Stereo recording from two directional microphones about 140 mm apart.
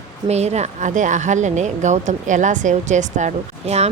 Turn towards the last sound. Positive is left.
turn(degrees=-55)  # may be behind; listen again after turning